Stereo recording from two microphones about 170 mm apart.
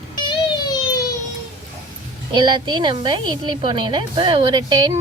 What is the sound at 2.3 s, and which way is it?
Speech, 25° right (ahead or behind).